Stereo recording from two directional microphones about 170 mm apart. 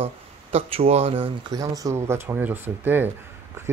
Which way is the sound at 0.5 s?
35° right (ahead or behind).